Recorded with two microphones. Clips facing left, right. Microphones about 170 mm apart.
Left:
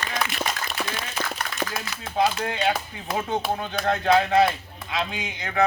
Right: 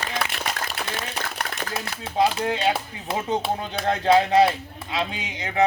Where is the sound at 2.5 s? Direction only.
30° right (ahead or behind).